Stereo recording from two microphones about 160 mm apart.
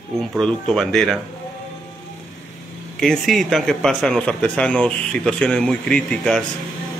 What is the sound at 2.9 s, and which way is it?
Speech, 5° left (ahead or behind).